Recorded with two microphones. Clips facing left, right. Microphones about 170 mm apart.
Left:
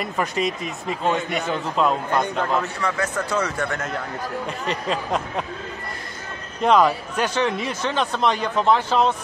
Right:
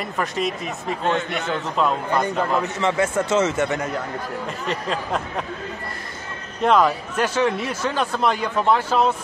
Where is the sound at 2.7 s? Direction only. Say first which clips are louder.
Right 4 dB; 25° right (ahead or behind).